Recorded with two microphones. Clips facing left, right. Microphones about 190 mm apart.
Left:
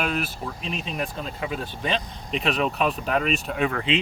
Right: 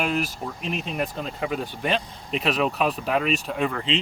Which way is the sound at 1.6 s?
10° right (ahead or behind).